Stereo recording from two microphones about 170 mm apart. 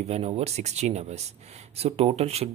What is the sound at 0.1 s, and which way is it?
Speech, 40° right (ahead or behind).